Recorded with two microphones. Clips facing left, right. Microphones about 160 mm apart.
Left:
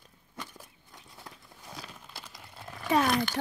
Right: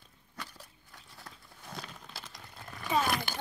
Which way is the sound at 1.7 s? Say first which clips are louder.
Right 1 dB; 5° left (ahead or behind).